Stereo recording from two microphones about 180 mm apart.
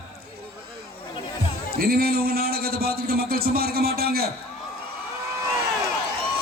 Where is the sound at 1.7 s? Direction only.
55° right (ahead or behind).